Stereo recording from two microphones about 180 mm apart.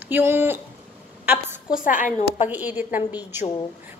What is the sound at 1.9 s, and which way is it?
Speech, 45° left (ahead or behind).